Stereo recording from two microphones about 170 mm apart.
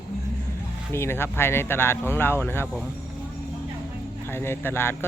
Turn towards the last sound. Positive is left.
turn(degrees=15)  # may be behind; listen again after turning